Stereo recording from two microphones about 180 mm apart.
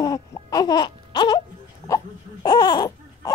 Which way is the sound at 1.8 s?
20° left (ahead or behind).